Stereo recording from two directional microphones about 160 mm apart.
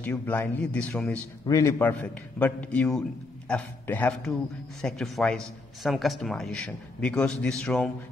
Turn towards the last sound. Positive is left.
turn(degrees=5)  # may be behind; listen again after turning